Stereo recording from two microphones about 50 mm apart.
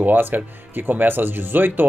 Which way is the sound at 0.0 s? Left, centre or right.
Right.